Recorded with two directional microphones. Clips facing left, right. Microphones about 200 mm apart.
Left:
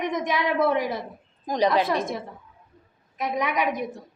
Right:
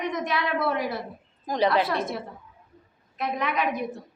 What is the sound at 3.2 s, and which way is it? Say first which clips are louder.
Speech: left 2 dB; 15° left (ahead or behind).